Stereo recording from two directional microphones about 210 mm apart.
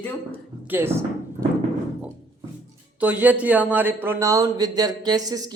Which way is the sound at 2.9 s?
5° right (ahead or behind).